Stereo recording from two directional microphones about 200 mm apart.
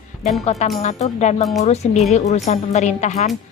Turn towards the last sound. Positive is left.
turn(degrees=35)  # may be behind; listen again after turning